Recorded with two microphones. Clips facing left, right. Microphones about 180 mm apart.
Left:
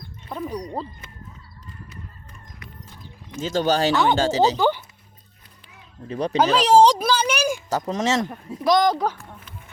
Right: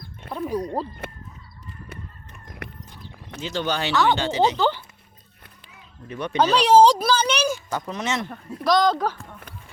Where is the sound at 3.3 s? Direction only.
45° left (ahead or behind).